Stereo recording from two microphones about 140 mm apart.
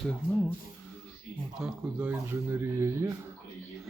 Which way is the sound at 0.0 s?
5° left (ahead or behind).